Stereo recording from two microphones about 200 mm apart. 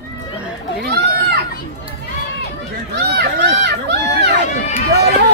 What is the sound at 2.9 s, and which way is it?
Run, 55° right (ahead or behind).